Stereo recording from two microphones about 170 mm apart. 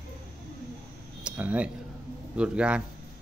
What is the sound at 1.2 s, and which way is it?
A man's voice, 10° right (ahead or behind).